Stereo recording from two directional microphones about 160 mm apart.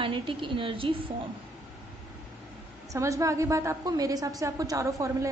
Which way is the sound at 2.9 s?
20° right (ahead or behind).